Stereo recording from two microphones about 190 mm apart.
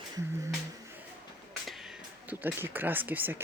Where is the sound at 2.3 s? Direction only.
10° right (ahead or behind).